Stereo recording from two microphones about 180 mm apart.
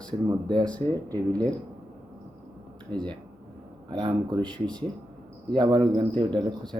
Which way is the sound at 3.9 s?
25° right (ahead or behind).